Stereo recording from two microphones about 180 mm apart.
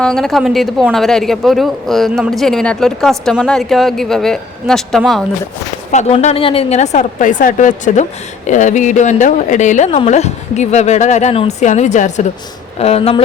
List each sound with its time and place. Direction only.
0.0 s speech: 5° left (ahead or behind)
5.9 s speech: 40° left (ahead or behind)